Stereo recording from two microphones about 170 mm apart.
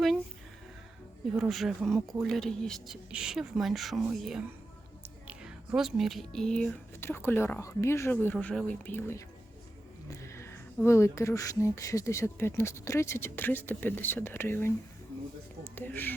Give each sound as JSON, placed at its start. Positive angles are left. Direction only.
{"t": 1.4, "sound": "a woman's voice", "side_deg": 0}
{"t": 10.3, "sound": "a sound", "side_deg": 15}
{"t": 10.8, "sound": "speech", "side_deg": 15}